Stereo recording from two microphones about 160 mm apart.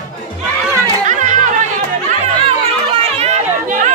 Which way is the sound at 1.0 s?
50° right (ahead or behind).